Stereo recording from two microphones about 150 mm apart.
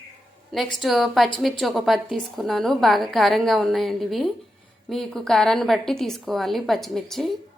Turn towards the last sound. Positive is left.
turn(degrees=0)  # may be behind; listen again after turning